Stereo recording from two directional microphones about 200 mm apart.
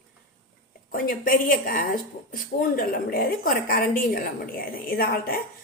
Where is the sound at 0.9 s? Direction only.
45° left (ahead or behind).